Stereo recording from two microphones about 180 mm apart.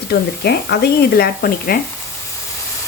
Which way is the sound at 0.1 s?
65° left (ahead or behind).